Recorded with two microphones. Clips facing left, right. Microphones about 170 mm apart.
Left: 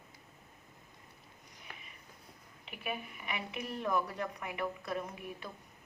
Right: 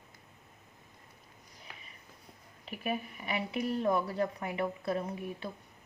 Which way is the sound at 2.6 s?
40° right (ahead or behind).